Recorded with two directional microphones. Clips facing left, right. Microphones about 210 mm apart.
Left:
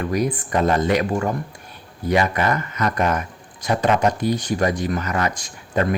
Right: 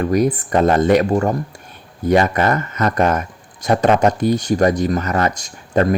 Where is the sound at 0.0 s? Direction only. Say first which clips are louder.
Right 6 dB; 45° right (ahead or behind).